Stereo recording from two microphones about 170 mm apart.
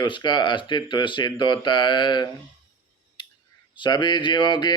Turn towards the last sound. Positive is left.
turn(degrees=25)  # may be behind; listen again after turning